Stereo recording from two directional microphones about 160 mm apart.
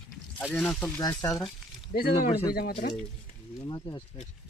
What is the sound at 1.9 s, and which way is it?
Speech, 65° left (ahead or behind).